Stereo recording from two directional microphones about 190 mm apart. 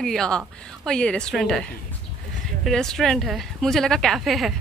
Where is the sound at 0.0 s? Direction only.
Centre (ahead or behind).